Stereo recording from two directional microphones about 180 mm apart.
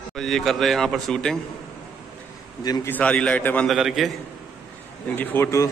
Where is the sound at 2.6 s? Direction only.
20° left (ahead or behind).